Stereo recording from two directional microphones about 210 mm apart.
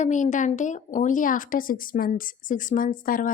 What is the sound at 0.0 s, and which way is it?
A woman's voice, 35° left (ahead or behind).